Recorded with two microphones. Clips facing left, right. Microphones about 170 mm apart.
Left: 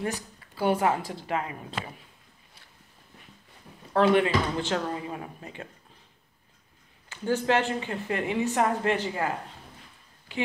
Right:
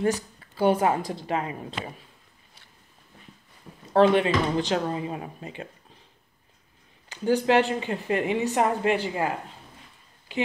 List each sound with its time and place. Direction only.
0.6 s speech: 20° right (ahead or behind)
3.9 s speech: 20° right (ahead or behind)
7.1 s speech: 15° right (ahead or behind)
10.3 s speech: 15° right (ahead or behind)